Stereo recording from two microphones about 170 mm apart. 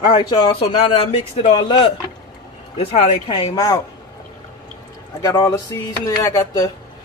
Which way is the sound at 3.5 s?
20° left (ahead or behind).